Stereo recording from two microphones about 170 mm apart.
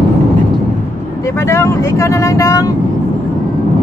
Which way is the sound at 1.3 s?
15° left (ahead or behind).